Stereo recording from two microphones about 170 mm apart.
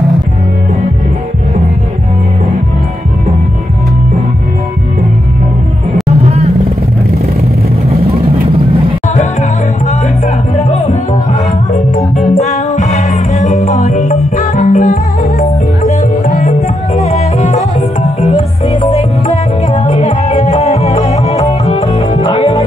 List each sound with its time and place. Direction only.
10.7 s music: 40° left (ahead or behind)
12.2 s music: 40° left (ahead or behind)